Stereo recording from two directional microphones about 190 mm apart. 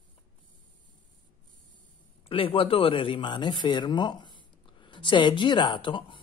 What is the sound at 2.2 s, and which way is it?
Speech, 30° left (ahead or behind).